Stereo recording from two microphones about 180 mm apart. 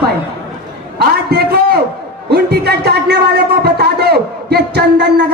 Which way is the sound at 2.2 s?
65° right (ahead or behind).